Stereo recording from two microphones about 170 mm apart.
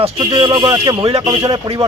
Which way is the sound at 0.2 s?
25° right (ahead or behind).